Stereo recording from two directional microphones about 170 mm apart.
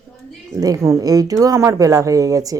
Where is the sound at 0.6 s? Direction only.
20° right (ahead or behind).